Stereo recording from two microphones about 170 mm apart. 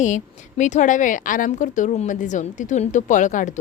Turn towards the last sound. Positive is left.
turn(degrees=45)  # may be behind; listen again after turning